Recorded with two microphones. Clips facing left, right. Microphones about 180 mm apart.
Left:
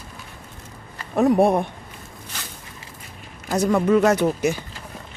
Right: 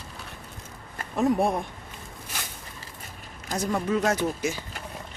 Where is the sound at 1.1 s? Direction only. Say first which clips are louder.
Left 7 dB; 65° left (ahead or behind).